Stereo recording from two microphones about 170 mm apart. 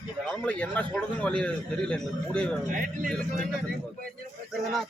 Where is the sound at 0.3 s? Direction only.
10° left (ahead or behind).